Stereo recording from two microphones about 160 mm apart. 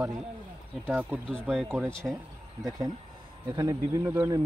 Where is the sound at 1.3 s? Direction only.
5° right (ahead or behind).